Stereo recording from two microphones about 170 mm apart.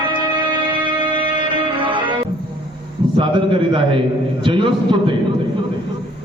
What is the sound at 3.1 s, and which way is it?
A man's voice, 30° right (ahead or behind).